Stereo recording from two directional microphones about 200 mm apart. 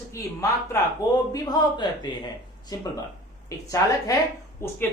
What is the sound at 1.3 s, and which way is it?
Speech, 20° left (ahead or behind).